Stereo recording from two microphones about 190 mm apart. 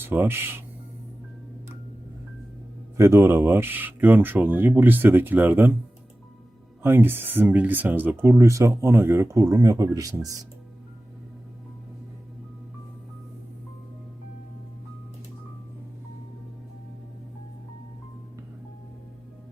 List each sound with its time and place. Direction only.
0.0 s speech: 10° right (ahead or behind)
3.0 s speech: 15° right (ahead or behind)
6.8 s speech: 10° right (ahead or behind)